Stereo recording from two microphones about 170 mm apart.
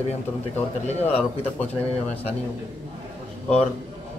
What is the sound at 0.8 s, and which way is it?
Speech, 40° left (ahead or behind).